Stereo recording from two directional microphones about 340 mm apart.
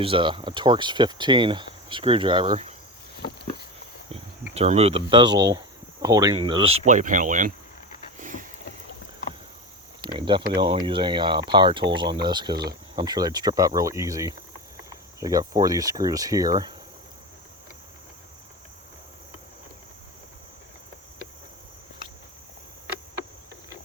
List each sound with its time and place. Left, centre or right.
0.0 s speech: centre
4.1 s speech: centre
8.2 s boat: right
10.0 s speech: centre